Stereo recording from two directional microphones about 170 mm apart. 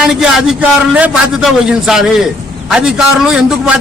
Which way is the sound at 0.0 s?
5° right (ahead or behind).